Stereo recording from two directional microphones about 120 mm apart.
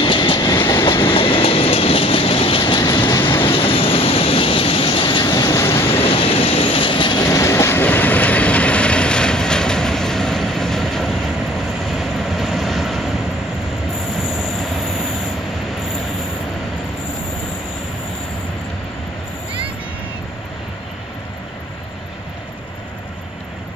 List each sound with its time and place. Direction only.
0.0 s train: 45° left (ahead or behind)
0.4 s train: 30° left (ahead or behind)
0.8 s train: 50° left (ahead or behind)
3.3 s vehicle: 50° left (ahead or behind)
5.2 s vehicle: 30° left (ahead or behind)
5.9 s vehicle: 55° left (ahead or behind)
7.2 s train: 25° left (ahead or behind); by 11.1 s 5° left (ahead or behind)
11.9 s vehicle: centre (ahead or behind)
14.2 s train: 5° right (ahead or behind)